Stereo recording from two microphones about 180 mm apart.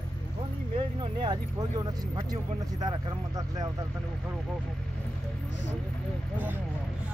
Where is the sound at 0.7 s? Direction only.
25° right (ahead or behind).